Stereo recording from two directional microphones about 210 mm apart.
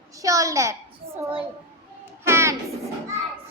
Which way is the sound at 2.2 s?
10° right (ahead or behind).